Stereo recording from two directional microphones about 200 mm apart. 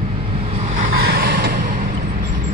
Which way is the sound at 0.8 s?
50° right (ahead or behind).